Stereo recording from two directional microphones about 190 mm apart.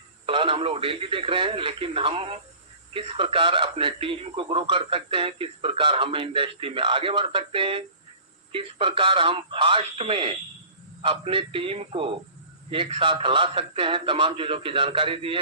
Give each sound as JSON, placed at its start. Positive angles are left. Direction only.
{"t": 0.3, "sound": "speech", "side_deg": -30}